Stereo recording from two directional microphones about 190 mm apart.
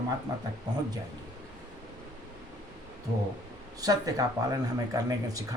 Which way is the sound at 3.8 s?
20° right (ahead or behind).